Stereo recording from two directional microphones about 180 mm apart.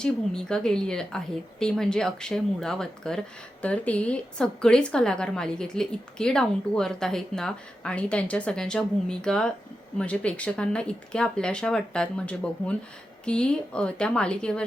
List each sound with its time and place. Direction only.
0.0 s speech: 5° left (ahead or behind)